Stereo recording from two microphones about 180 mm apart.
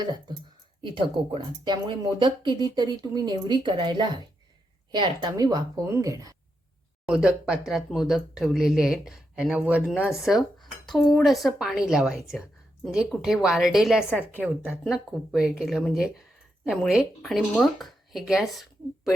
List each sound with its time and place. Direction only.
0.0 s speech: 25° right (ahead or behind)
7.0 s speech: 5° right (ahead or behind)